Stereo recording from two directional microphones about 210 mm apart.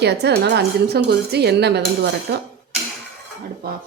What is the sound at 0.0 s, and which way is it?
A woman's voice, 50° right (ahead or behind).